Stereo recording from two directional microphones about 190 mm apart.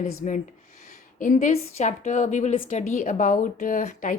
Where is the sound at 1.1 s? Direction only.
45° left (ahead or behind).